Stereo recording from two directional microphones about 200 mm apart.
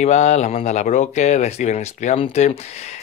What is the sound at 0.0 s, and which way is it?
Speech, 35° left (ahead or behind).